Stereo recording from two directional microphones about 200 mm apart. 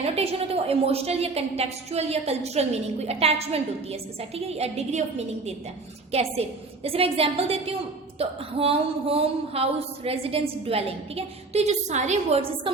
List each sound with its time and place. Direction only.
0.0 s a woman's voice: 30° right (ahead or behind)